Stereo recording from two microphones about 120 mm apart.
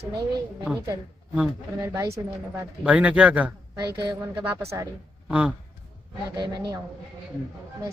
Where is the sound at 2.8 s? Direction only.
10° right (ahead or behind).